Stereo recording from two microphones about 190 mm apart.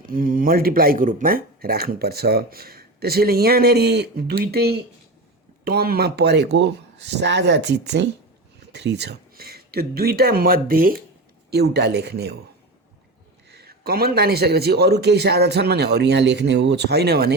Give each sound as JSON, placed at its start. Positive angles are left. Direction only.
{"t": 0.0, "sound": "a man's voice", "side_deg": -45}
{"t": 13.5, "sound": "a man's voice", "side_deg": -55}